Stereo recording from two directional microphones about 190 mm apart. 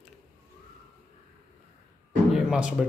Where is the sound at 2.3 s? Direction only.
5° right (ahead or behind).